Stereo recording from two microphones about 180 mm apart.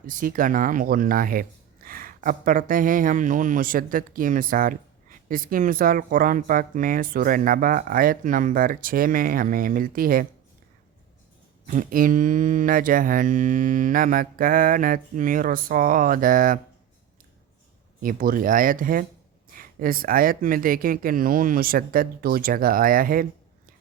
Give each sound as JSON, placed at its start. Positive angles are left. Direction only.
{"t": 0.1, "sound": "speech", "side_deg": -50}
{"t": 11.6, "sound": "speech", "side_deg": -45}
{"t": 18.0, "sound": "speech", "side_deg": -50}